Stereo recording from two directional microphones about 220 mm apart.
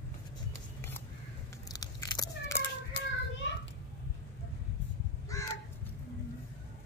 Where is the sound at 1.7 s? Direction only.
15° left (ahead or behind).